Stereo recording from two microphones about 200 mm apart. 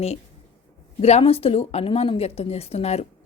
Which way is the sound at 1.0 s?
30° left (ahead or behind).